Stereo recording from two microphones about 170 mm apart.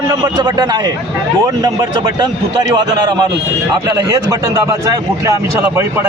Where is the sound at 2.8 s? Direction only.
25° right (ahead or behind).